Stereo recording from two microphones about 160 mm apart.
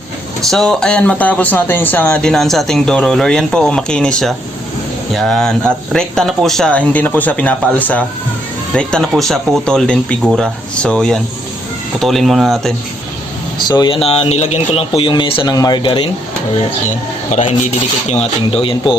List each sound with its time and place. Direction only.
0.5 s speech: 5° left (ahead or behind)
13.7 s speech: 30° left (ahead or behind)
17.3 s speech: 50° left (ahead or behind)
18.1 s speech: 35° left (ahead or behind)